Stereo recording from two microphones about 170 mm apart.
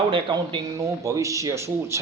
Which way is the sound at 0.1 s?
30° right (ahead or behind).